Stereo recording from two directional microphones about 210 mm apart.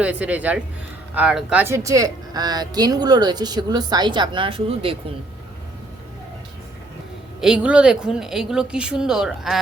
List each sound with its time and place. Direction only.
0.0 s a woman's voice: 5° right (ahead or behind); by 4.9 s 25° right (ahead or behind)
7.4 s speech: 5° right (ahead or behind)